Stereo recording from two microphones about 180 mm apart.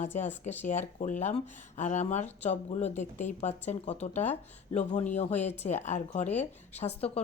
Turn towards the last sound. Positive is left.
turn(degrees=35)  # may be behind; listen again after turning